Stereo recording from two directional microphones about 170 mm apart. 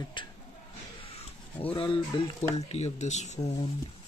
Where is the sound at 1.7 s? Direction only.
30° left (ahead or behind).